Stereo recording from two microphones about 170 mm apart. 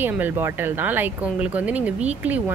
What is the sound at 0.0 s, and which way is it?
A woman's voice, 10° right (ahead or behind).